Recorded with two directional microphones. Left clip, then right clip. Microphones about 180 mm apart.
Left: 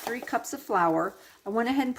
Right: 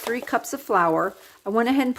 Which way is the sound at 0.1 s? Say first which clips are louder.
Right 6 dB; 35° right (ahead or behind).